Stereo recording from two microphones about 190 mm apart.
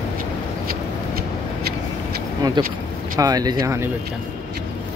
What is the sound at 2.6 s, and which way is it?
Speech, 25° right (ahead or behind).